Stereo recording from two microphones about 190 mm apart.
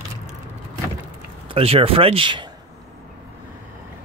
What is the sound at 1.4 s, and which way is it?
Speech, 30° right (ahead or behind).